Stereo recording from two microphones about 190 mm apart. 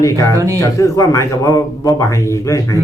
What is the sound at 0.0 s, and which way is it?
A man's voice, 15° left (ahead or behind).